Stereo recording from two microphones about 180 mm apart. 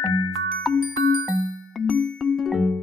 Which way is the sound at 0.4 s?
Centre (ahead or behind).